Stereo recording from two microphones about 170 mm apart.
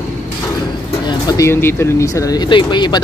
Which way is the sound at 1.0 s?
20° left (ahead or behind).